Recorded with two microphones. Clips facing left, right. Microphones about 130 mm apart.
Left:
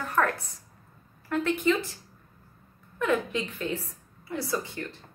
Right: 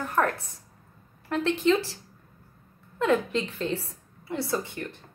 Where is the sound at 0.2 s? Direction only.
20° right (ahead or behind).